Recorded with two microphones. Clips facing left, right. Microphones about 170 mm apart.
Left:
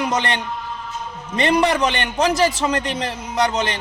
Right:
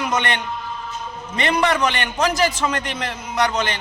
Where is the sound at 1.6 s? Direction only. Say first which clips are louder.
Left 1 dB; 30° left (ahead or behind).